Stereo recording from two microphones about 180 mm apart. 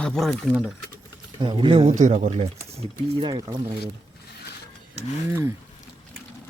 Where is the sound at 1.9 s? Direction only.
45° right (ahead or behind).